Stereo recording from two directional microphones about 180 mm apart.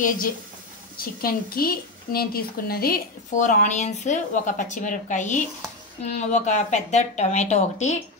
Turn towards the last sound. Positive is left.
turn(degrees=40)  # may be behind; listen again after turning